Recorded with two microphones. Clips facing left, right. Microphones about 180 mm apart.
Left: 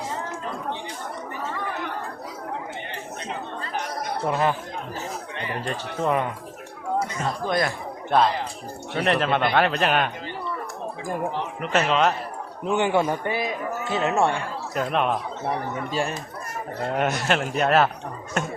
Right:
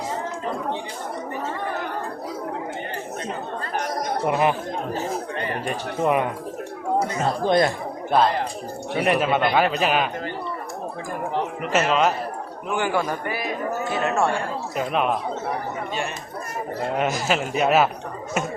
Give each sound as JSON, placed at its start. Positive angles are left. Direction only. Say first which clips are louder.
{"t": 4.3, "sound": "speech", "louder": "right 2 dB", "side_deg": -15}
{"t": 5.6, "sound": "speech", "louder": "right 2 dB", "side_deg": -15}
{"t": 7.2, "sound": "speech", "louder": "right 5 dB", "side_deg": -30}
{"t": 8.9, "sound": "a man's voice", "louder": "right 2 dB", "side_deg": -10}
{"t": 11.6, "sound": "a man's voice", "louder": "even", "side_deg": -5}
{"t": 12.7, "sound": "a man's voice", "louder": "left 2 dB", "side_deg": 25}
{"t": 14.8, "sound": "a man's voice", "louder": "even", "side_deg": -5}
{"t": 17.0, "sound": "a man's voice", "louder": "even", "side_deg": 0}